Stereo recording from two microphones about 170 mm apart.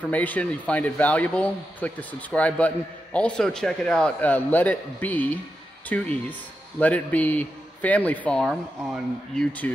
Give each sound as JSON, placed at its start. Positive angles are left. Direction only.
{"t": 0.0, "sound": "a man's voice", "side_deg": 10}